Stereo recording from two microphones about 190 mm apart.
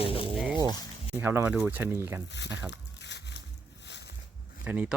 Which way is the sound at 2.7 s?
65° left (ahead or behind).